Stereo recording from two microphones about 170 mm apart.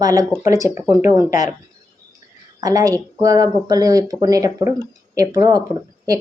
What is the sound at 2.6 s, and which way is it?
Speech, 20° right (ahead or behind).